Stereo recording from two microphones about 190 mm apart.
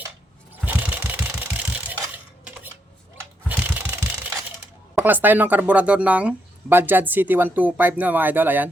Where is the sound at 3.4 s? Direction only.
10° right (ahead or behind).